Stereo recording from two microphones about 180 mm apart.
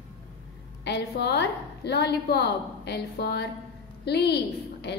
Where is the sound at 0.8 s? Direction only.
70° left (ahead or behind).